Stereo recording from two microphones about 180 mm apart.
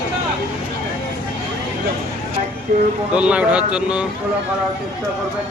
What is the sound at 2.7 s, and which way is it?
Speech, 55° right (ahead or behind).